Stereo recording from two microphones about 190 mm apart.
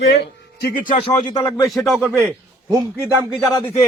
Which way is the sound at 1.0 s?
30° left (ahead or behind).